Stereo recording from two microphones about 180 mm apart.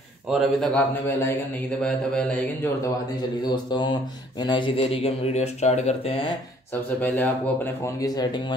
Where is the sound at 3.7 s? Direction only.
25° left (ahead or behind).